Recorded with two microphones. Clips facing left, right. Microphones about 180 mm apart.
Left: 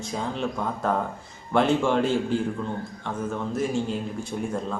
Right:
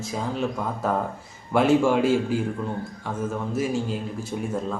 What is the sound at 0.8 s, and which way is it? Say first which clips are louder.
A man's voice: right 1 dB; 5° right (ahead or behind).